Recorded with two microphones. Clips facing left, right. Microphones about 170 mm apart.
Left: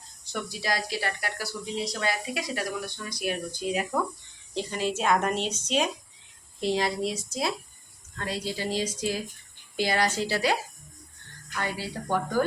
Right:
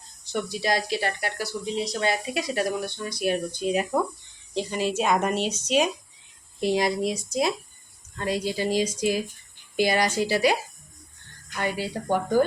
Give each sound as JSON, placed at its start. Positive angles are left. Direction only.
{"t": 0.6, "sound": "speech", "side_deg": -25}
{"t": 4.5, "sound": "speech", "side_deg": -15}